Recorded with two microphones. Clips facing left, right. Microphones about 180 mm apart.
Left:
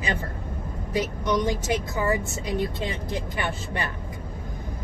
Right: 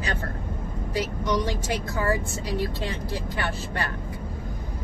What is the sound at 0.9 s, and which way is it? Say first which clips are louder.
Speech: left 2 dB; 20° left (ahead or behind).